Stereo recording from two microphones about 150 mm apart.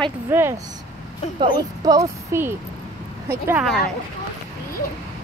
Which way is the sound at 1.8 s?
25° right (ahead or behind).